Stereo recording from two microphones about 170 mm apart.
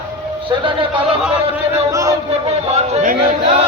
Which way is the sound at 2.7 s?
40° right (ahead or behind).